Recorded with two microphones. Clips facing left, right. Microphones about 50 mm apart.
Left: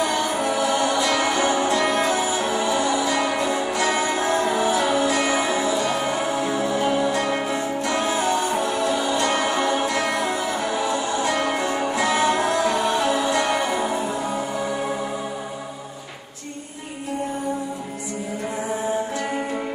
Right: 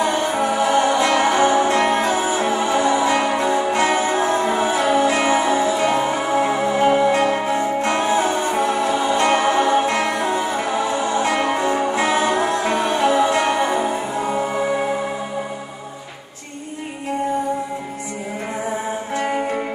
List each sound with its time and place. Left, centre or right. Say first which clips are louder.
0.4 s music: right 6 dB; right
11.6 s music: right 3 dB; right